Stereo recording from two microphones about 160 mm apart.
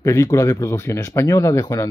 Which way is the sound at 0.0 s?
20° left (ahead or behind).